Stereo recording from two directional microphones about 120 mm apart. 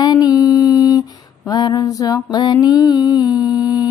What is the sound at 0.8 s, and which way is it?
Female singing, 30° left (ahead or behind).